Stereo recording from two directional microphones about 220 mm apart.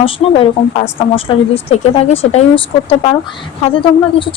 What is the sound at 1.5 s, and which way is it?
Speech, 25° left (ahead or behind).